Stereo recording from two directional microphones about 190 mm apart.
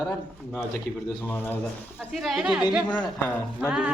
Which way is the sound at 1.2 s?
10° left (ahead or behind).